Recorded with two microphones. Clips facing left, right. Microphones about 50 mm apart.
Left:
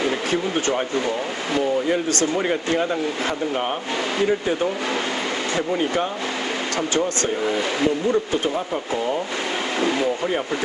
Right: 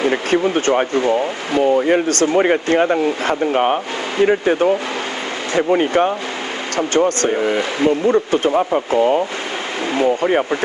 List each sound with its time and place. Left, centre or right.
0.3 s speech: right
7.3 s speech: right